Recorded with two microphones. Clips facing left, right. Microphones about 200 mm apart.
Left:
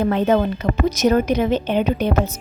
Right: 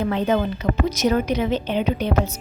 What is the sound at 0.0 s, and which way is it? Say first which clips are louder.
A woman's voice: left 4 dB; 50° left (ahead or behind).